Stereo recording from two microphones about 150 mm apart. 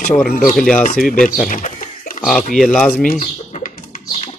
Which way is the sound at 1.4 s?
60° left (ahead or behind).